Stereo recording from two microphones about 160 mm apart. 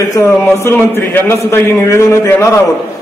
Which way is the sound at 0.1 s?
20° left (ahead or behind).